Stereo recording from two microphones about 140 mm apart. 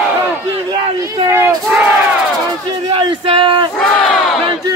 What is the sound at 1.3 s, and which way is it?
Crowd, 20° right (ahead or behind).